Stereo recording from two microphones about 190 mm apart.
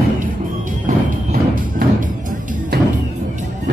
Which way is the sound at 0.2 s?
45° right (ahead or behind).